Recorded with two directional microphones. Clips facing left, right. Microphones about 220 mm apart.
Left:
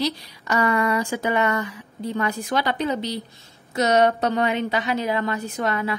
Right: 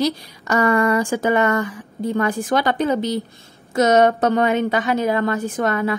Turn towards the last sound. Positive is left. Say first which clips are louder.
# right 5 dB
turn(degrees=-50)  # may be behind; listen again after turning